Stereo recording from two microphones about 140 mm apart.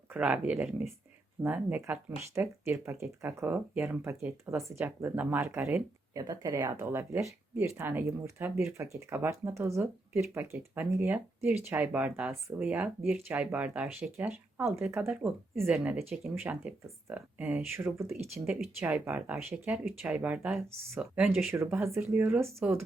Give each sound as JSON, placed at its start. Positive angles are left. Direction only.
{"t": 0.1, "sound": "speech", "side_deg": -10}
{"t": 14.6, "sound": "speech", "side_deg": -20}
{"t": 21.5, "sound": "speech", "side_deg": -15}